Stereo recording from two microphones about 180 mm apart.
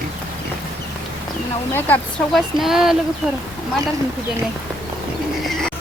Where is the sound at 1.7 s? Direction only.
10° left (ahead or behind).